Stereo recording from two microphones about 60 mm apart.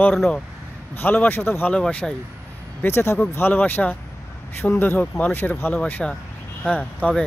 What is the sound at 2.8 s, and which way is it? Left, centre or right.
Speech, left.